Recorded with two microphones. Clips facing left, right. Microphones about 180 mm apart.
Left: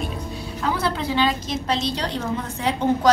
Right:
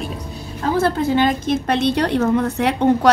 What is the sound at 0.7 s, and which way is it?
A woman's voice, 45° right (ahead or behind).